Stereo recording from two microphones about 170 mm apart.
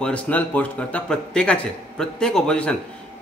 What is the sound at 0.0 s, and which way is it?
A man's voice, 10° left (ahead or behind).